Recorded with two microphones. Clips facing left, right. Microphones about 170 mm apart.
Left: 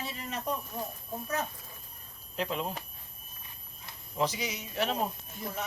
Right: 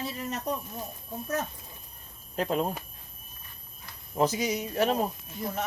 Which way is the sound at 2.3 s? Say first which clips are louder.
Right 5 dB; 45° right (ahead or behind).